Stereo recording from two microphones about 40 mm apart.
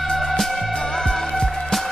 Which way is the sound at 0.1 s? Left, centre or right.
Centre.